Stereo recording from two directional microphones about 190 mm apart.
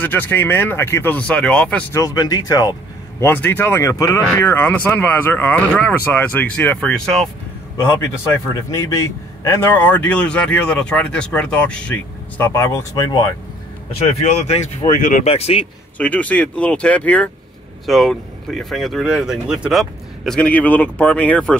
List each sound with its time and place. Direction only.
0.0 s speech: 10° left (ahead or behind)
8.6 s speech: 15° left (ahead or behind)
14.0 s speech: 35° left (ahead or behind)
14.9 s speech: 45° left (ahead or behind)
16.0 s speech: 5° left (ahead or behind)